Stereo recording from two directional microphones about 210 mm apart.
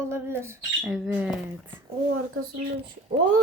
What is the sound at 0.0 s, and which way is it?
Speech, 10° right (ahead or behind).